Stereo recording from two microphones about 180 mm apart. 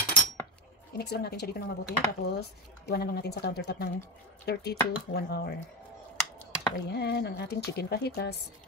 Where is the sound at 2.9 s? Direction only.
65° left (ahead or behind).